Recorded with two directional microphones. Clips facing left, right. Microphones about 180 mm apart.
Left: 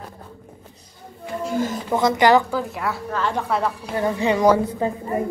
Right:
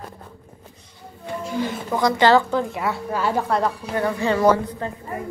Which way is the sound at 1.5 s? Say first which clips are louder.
Left 2 dB; 45° left (ahead or behind).